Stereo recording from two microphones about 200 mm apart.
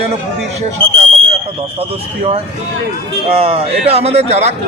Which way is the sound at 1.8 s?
30° right (ahead or behind).